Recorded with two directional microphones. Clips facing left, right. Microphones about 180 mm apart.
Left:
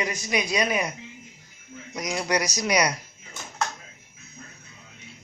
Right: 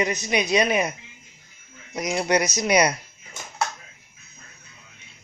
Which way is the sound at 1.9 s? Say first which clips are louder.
Right 4 dB; 25° right (ahead or behind).